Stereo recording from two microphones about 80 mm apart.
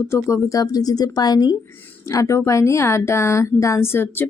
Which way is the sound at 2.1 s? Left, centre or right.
Left.